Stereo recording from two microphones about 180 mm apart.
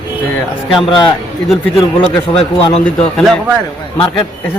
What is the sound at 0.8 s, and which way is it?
A man's voice, 25° left (ahead or behind).